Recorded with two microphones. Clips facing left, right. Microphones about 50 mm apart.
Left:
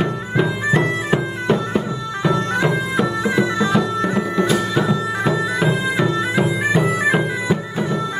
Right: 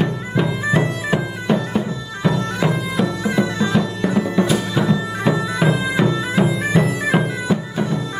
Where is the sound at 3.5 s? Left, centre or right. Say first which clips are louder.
Left 2 dB; centre.